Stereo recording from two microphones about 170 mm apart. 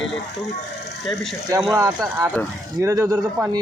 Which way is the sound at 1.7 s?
20° right (ahead or behind).